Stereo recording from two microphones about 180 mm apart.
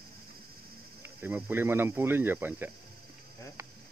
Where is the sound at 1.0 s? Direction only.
10° right (ahead or behind).